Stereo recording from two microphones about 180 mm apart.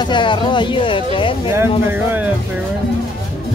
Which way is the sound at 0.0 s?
25° left (ahead or behind).